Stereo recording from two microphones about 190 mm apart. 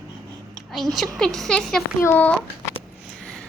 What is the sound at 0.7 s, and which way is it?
A woman's voice, centre (ahead or behind).